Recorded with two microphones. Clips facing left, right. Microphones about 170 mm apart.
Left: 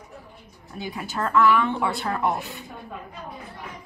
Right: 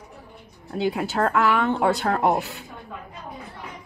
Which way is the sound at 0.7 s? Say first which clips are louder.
Right 7 dB; 75° right (ahead or behind).